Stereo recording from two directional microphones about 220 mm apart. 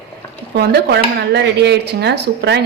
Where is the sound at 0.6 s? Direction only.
50° right (ahead or behind).